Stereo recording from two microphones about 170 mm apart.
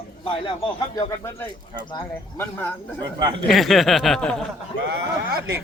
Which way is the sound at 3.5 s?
Centre (ahead or behind).